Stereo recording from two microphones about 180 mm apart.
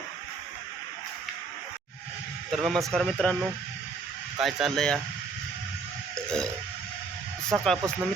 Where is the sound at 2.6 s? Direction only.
Centre (ahead or behind).